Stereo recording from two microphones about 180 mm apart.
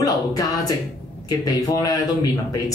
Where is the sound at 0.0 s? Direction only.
20° left (ahead or behind).